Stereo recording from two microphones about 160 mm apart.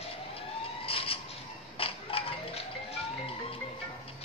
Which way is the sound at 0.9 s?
35° left (ahead or behind).